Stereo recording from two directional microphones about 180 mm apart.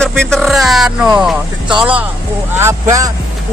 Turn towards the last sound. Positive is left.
turn(degrees=-20)  # may be behind; listen again after turning